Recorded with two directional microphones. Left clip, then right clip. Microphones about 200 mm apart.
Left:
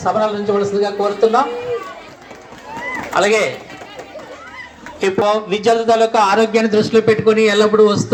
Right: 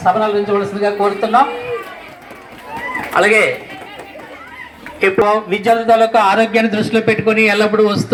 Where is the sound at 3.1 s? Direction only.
55° left (ahead or behind).